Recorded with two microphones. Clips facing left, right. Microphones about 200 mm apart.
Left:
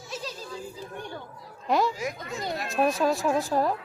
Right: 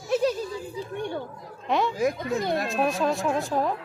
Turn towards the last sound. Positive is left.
turn(degrees=5)  # may be behind; listen again after turning